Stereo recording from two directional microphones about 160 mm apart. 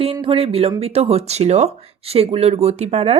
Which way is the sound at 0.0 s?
35° right (ahead or behind).